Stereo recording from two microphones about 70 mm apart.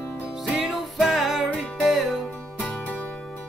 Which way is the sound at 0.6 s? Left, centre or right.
Centre.